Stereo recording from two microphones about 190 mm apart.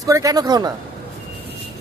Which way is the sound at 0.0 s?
15° right (ahead or behind).